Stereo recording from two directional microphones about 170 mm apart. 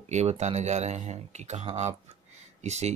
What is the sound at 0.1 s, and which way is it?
Speech, 40° right (ahead or behind).